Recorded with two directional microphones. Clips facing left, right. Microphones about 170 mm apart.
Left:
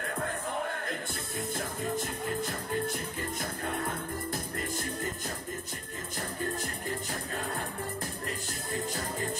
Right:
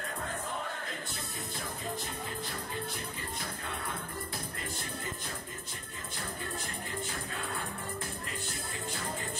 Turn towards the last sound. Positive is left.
turn(degrees=45)  # may be behind; listen again after turning